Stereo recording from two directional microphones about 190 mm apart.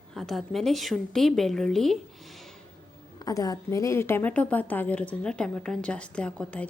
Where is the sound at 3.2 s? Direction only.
20° left (ahead or behind).